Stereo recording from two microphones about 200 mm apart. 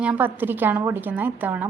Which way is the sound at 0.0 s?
5° right (ahead or behind).